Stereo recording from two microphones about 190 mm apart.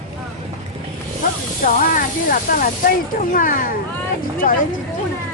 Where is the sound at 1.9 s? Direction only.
45° left (ahead or behind).